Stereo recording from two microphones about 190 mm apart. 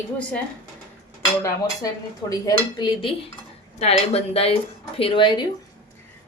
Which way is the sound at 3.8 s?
30° left (ahead or behind).